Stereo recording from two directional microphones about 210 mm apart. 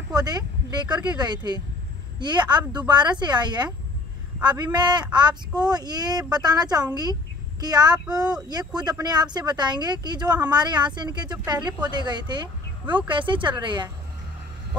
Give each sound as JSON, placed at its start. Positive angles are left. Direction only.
{"t": 0.1, "sound": "a man's voice", "side_deg": -20}
{"t": 8.2, "sound": "speech", "side_deg": -5}
{"t": 8.5, "sound": "speech", "side_deg": -20}